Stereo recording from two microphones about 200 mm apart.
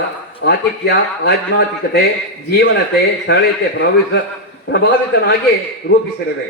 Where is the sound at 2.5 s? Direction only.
55° left (ahead or behind).